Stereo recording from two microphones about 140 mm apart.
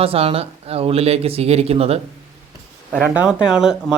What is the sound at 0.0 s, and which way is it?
Speech, 45° right (ahead or behind).